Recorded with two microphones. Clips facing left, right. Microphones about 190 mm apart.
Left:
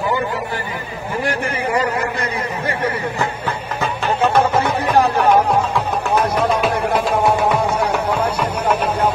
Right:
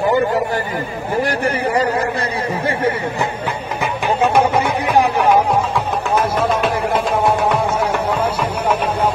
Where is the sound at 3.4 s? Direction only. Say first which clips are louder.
Right 1 dB; 10° right (ahead or behind).